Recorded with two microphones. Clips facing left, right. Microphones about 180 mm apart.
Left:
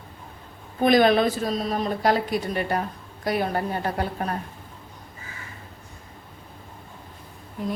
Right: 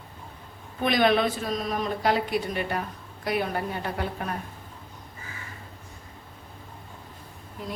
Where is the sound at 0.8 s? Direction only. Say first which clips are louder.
Left 4 dB; 40° left (ahead or behind).